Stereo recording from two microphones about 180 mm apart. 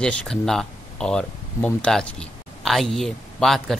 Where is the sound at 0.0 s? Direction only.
5° left (ahead or behind).